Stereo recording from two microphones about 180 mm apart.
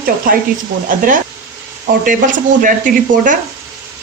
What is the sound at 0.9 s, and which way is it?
Speech, 50° right (ahead or behind).